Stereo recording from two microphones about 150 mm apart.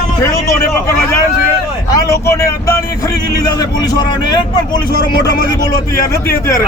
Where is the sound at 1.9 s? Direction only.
20° left (ahead or behind).